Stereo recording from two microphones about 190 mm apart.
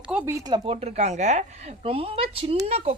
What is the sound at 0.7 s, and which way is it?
Speech, 35° right (ahead or behind).